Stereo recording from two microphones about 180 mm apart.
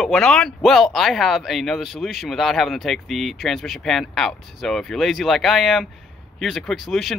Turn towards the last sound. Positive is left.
turn(degrees=0)  # may be behind; listen again after turning